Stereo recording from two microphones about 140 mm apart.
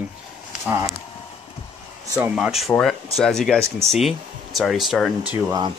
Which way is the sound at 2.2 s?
5° right (ahead or behind).